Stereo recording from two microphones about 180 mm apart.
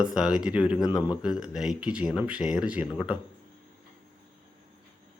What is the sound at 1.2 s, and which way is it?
Speech, 5° right (ahead or behind).